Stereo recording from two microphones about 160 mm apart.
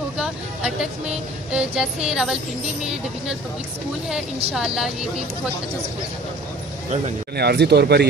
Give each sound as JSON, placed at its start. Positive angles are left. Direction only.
{"t": 0.2, "sound": "a sound", "side_deg": -5}
{"t": 1.5, "sound": "music", "side_deg": -5}
{"t": 4.6, "sound": "music", "side_deg": -5}
{"t": 7.3, "sound": "speech", "side_deg": -90}